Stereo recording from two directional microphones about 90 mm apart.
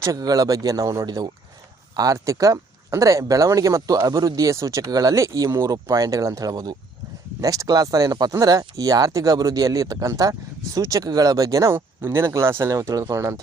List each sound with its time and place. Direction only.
0.0 s speech: 40° right (ahead or behind)
11.7 s speech: 25° right (ahead or behind)